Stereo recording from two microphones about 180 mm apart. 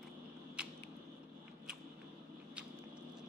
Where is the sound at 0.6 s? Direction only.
5° right (ahead or behind).